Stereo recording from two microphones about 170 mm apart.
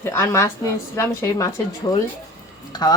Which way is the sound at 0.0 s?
15° left (ahead or behind).